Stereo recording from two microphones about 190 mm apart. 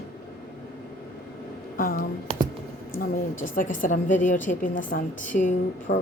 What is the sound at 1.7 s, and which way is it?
A woman's voice, 45° left (ahead or behind).